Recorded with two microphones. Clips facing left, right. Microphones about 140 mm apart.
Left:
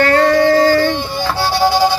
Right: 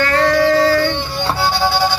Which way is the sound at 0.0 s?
45° left (ahead or behind).